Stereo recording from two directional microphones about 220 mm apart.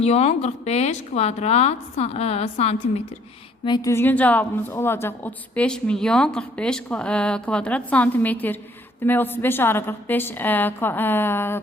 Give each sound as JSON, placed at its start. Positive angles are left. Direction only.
{"t": 0.0, "sound": "a woman's voice", "side_deg": 30}